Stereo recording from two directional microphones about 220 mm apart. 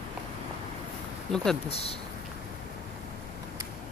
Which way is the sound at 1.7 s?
25° left (ahead or behind).